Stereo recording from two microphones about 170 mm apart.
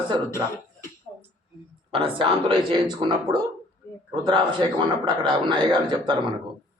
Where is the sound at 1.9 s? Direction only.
30° right (ahead or behind).